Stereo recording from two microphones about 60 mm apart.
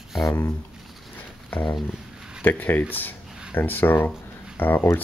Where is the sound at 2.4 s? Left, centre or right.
Left.